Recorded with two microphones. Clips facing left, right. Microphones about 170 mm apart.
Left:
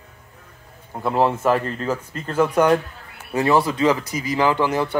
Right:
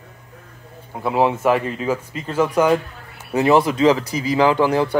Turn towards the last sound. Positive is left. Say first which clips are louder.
# right 3 dB
turn(degrees=-10)  # may be behind; listen again after turning